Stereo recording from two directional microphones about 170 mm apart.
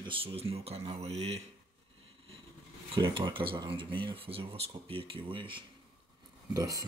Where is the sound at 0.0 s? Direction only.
30° right (ahead or behind).